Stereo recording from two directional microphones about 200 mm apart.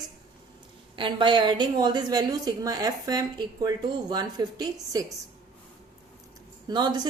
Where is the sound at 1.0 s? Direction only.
25° right (ahead or behind).